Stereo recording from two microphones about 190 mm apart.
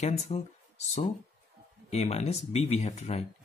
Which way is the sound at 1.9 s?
35° left (ahead or behind).